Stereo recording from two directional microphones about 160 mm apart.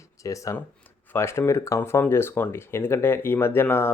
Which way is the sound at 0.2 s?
20° left (ahead or behind).